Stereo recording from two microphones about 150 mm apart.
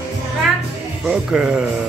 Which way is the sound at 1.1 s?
5° right (ahead or behind).